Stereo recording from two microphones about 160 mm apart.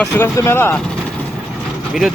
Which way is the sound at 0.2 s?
15° left (ahead or behind).